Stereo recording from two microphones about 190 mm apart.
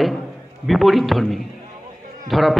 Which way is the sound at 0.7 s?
Centre (ahead or behind).